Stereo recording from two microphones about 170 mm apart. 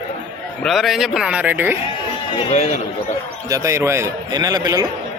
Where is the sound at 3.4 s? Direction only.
20° right (ahead or behind).